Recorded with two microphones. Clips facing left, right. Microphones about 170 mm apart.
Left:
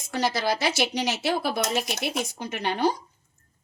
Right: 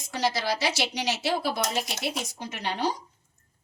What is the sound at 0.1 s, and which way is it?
A woman's voice, 50° left (ahead or behind).